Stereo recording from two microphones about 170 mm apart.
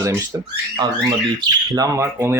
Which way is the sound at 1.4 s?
25° right (ahead or behind).